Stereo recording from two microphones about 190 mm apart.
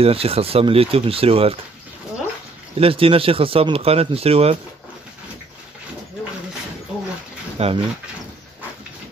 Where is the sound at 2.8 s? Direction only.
30° right (ahead or behind).